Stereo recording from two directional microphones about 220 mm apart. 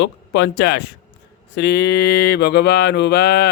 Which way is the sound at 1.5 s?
50° left (ahead or behind).